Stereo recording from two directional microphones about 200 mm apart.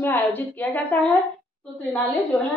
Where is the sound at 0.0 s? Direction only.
10° left (ahead or behind).